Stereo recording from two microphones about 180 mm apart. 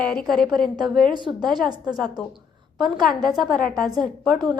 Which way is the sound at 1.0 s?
25° right (ahead or behind).